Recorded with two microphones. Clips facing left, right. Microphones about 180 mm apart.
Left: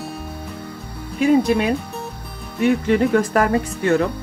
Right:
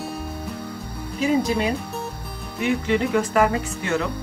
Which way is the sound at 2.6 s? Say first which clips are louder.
Left 5 dB; 45° left (ahead or behind).